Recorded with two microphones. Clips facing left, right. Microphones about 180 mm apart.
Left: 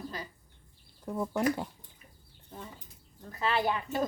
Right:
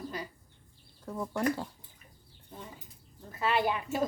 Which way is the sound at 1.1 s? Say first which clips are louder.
Left 2 dB; 10° left (ahead or behind).